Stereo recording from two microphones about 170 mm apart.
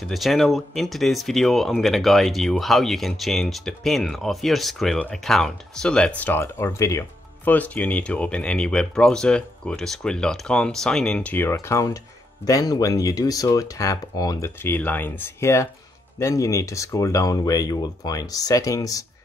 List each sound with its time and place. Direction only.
0.1 s speech: centre (ahead or behind); by 19.0 s 20° left (ahead or behind)